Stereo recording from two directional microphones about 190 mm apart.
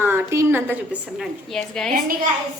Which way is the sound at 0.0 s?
10° right (ahead or behind).